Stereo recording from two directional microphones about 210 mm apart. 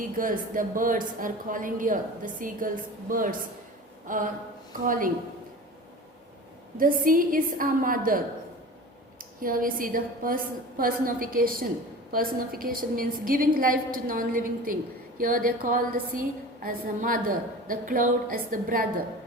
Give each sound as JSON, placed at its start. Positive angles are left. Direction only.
{"t": 0.2, "sound": "speech", "side_deg": -40}
{"t": 6.7, "sound": "a woman's voice", "side_deg": -40}